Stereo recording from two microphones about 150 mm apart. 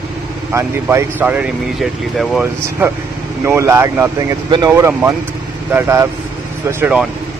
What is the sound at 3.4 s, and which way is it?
Speech, 15° right (ahead or behind).